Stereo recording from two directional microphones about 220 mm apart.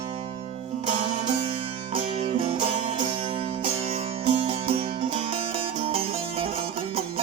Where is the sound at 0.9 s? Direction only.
30° right (ahead or behind).